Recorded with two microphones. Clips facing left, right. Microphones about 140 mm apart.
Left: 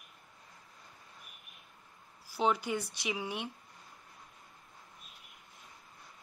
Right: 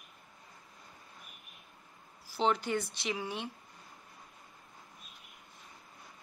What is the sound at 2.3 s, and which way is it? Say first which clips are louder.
Speech: right 1 dB; 10° left (ahead or behind).